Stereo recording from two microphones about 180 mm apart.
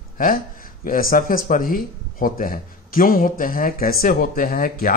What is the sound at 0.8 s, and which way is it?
Speech, 50° left (ahead or behind).